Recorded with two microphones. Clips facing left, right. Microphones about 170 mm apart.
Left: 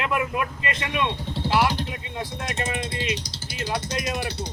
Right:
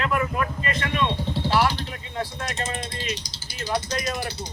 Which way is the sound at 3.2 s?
65° left (ahead or behind).